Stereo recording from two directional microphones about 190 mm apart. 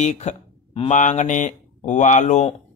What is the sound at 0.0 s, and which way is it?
Speech, 40° left (ahead or behind).